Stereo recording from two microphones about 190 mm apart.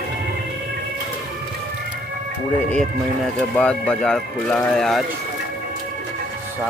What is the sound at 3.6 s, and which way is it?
Speech, 5° left (ahead or behind).